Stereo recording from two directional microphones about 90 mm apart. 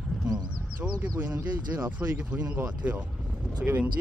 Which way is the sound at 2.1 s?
10° right (ahead or behind).